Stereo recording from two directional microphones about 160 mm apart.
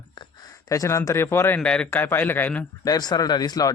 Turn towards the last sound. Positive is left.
turn(degrees=25)  # may be behind; listen again after turning